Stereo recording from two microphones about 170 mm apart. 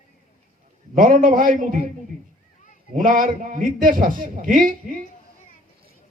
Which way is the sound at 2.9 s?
55° right (ahead or behind).